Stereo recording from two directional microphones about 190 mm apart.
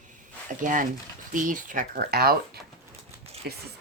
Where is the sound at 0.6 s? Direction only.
45° right (ahead or behind).